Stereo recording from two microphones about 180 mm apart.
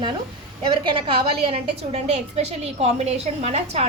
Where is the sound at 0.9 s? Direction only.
30° right (ahead or behind).